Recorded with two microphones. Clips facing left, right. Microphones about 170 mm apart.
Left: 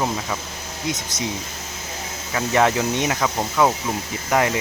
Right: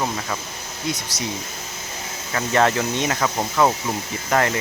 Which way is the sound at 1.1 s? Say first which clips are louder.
Left 2 dB; 50° left (ahead or behind).